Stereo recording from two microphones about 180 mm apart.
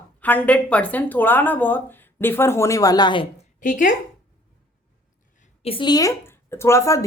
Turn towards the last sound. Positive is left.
turn(degrees=15)  # may be behind; listen again after turning